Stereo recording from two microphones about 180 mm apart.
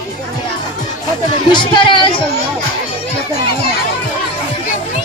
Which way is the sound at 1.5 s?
25° left (ahead or behind).